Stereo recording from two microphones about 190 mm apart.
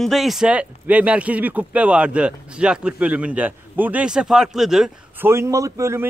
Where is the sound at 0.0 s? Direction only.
Centre (ahead or behind).